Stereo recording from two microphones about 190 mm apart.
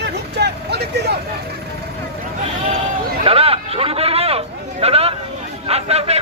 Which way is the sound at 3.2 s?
30° right (ahead or behind).